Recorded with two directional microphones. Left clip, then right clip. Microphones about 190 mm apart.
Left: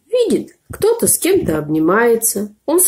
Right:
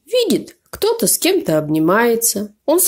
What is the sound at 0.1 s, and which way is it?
Speech, 50° right (ahead or behind).